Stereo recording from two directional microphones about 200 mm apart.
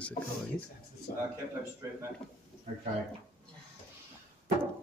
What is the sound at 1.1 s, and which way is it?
Speech, 45° left (ahead or behind).